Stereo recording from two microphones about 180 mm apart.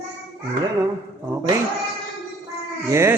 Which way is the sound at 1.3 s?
20° right (ahead or behind).